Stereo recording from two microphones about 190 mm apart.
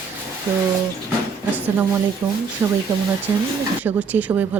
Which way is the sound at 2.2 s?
20° right (ahead or behind).